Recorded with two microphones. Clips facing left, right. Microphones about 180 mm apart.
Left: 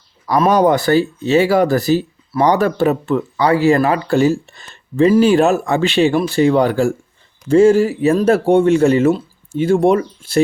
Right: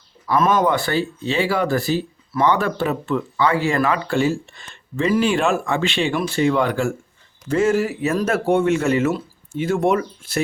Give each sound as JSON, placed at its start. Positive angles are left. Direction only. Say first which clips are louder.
{"t": 0.3, "sound": "speech", "louder": "left 5 dB", "side_deg": 40}